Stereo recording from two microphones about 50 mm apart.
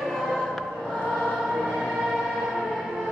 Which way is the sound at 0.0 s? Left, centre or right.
Centre.